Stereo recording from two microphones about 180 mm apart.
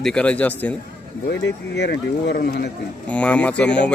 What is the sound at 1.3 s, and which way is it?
Speech, 70° left (ahead or behind).